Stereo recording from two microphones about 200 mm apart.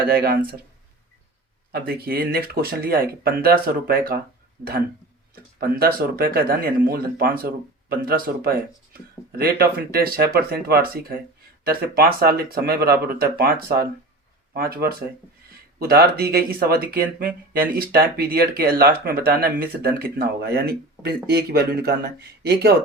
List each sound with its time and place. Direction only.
0.0 s speech: 50° right (ahead or behind)
1.7 s speech: 50° right (ahead or behind)
5.5 s speech: 50° right (ahead or behind)